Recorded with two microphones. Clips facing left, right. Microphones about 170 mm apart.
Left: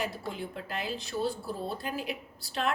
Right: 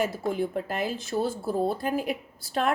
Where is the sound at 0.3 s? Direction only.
50° right (ahead or behind).